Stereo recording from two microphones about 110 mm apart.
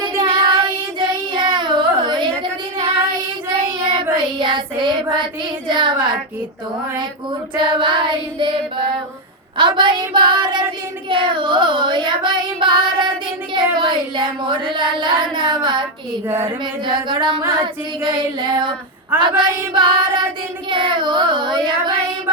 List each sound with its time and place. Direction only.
0.0 s child singing: 45° right (ahead or behind)
7.5 s child singing: 45° right (ahead or behind)
16.2 s speech: 20° right (ahead or behind)
16.8 s child singing: 45° right (ahead or behind)